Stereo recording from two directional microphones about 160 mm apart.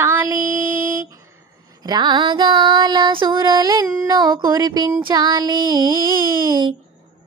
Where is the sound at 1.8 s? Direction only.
25° right (ahead or behind).